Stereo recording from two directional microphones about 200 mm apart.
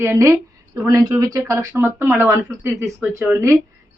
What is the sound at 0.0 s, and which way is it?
Speech, 15° right (ahead or behind).